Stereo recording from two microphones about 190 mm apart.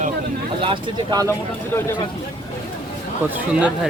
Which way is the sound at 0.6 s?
25° right (ahead or behind).